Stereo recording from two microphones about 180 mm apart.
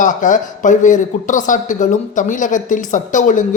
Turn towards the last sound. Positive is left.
turn(degrees=45)  # may be behind; listen again after turning